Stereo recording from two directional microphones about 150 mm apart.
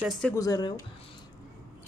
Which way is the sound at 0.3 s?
25° left (ahead or behind).